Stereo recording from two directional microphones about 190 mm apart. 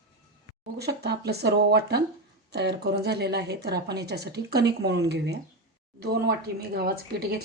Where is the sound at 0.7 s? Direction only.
60° right (ahead or behind).